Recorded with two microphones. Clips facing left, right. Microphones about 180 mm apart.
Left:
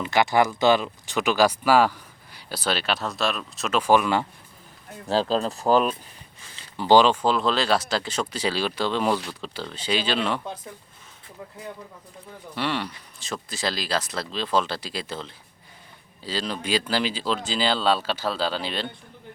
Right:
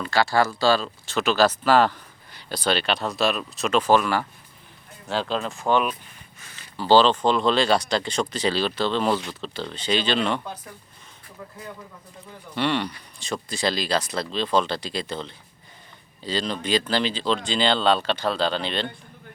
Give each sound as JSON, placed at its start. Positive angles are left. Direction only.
{"t": 0.0, "sound": "speech", "side_deg": 20}
{"t": 5.0, "sound": "speech", "side_deg": 35}
{"t": 6.6, "sound": "speech", "side_deg": 15}
{"t": 12.5, "sound": "speech", "side_deg": 5}